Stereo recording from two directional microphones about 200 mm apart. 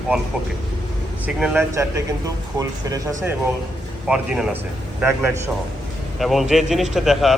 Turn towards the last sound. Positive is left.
turn(degrees=0)  # may be behind; listen again after turning